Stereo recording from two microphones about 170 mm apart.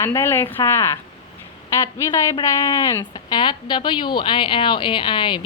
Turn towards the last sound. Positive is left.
turn(degrees=30)  # may be behind; listen again after turning